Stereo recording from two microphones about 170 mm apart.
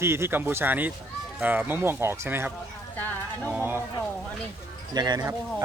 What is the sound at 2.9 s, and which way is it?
Music, 10° left (ahead or behind).